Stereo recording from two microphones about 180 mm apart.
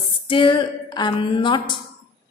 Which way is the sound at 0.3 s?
30° left (ahead or behind).